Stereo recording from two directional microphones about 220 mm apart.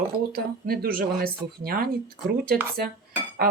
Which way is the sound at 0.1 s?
45° right (ahead or behind).